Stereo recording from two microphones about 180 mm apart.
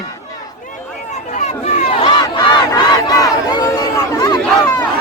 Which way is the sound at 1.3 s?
40° left (ahead or behind).